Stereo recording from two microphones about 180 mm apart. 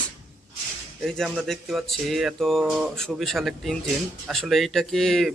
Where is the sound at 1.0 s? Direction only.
Centre (ahead or behind).